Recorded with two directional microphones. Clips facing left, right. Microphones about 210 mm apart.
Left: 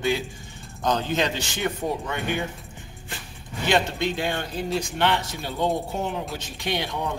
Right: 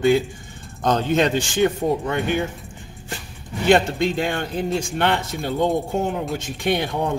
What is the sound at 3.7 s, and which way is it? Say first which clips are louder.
A man's voice: right 6 dB; 50° right (ahead or behind).